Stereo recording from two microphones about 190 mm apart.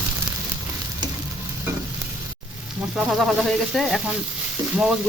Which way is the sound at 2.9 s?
Centre (ahead or behind).